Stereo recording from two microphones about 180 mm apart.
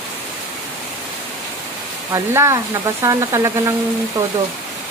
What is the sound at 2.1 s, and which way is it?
Speech, 15° right (ahead or behind).